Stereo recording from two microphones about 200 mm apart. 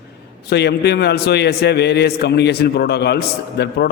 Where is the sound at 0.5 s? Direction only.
55° left (ahead or behind).